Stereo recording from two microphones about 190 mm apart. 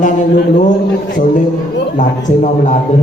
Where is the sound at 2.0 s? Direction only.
40° left (ahead or behind).